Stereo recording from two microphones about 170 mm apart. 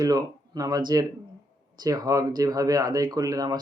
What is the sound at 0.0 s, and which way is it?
Speech, 20° right (ahead or behind).